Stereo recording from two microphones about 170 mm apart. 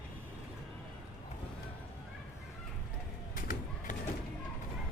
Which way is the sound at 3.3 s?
55° left (ahead or behind).